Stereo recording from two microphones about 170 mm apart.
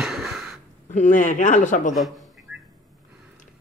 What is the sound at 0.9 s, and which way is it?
Speech, 45° left (ahead or behind).